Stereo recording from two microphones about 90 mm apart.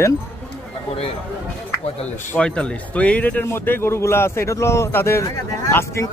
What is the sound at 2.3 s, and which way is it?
A man's voice, 10° left (ahead or behind).